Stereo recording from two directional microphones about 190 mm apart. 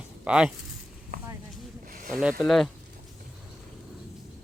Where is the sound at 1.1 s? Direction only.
50° right (ahead or behind).